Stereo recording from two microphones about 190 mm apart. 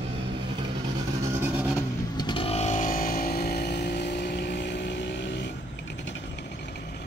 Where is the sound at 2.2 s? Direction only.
25° left (ahead or behind).